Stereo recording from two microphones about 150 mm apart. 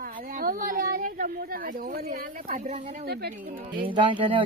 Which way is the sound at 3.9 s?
35° right (ahead or behind).